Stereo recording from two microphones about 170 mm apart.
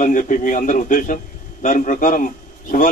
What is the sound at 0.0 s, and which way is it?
A man's voice, 50° left (ahead or behind).